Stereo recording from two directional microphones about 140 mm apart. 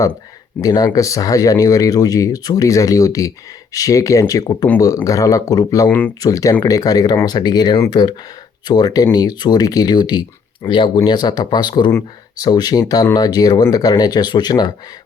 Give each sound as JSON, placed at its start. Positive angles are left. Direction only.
{"t": 0.6, "sound": "speech", "side_deg": 30}